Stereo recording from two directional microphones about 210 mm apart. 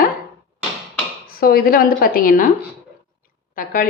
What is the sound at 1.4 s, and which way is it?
A woman's voice, 45° left (ahead or behind).